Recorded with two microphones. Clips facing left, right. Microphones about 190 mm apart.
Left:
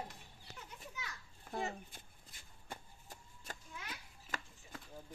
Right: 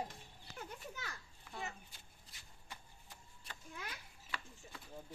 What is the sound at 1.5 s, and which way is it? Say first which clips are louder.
Speech: left 6 dB; 35° left (ahead or behind).